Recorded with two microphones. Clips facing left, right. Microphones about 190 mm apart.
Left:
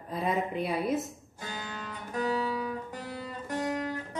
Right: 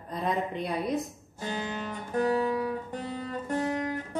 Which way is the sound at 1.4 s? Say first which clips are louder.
Right 6 dB; 20° right (ahead or behind).